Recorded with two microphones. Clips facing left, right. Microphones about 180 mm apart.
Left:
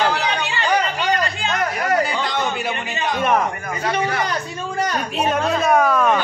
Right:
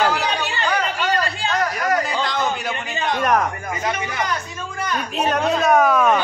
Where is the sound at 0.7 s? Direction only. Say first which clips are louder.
Left 3 dB; 20° left (ahead or behind).